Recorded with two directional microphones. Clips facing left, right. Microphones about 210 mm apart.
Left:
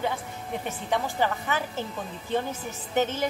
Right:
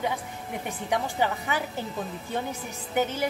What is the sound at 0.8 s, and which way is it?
A woman's voice, 15° right (ahead or behind).